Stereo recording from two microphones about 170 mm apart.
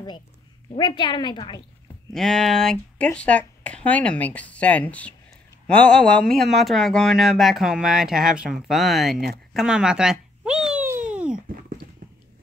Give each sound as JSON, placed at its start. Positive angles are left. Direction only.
{"t": 0.7, "sound": "a woman's voice", "side_deg": 25}
{"t": 2.1, "sound": "speech", "side_deg": 0}
{"t": 10.7, "sound": "a sound", "side_deg": -10}